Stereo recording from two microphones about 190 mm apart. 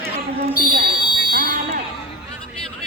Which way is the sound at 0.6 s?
50° right (ahead or behind).